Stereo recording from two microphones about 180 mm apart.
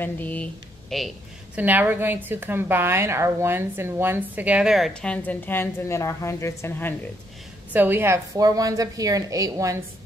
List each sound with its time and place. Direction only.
0.0 s a woman's voice: 10° left (ahead or behind)
7.7 s a woman's voice: 10° right (ahead or behind)